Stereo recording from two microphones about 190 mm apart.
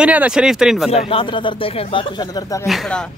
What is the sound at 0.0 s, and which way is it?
Speech, 5° right (ahead or behind).